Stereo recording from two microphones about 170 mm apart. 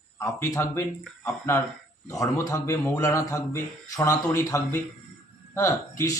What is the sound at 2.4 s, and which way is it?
Speech, 15° left (ahead or behind).